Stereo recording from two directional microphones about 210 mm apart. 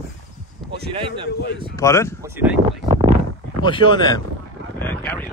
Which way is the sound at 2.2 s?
10° right (ahead or behind).